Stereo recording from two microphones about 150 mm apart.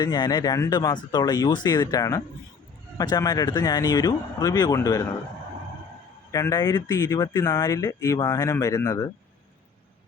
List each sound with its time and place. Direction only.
0.0 s speech: 30° left (ahead or behind)
6.3 s speech: 25° left (ahead or behind)